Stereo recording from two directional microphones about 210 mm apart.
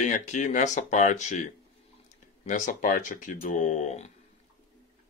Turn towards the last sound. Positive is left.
turn(degrees=35)  # may be behind; listen again after turning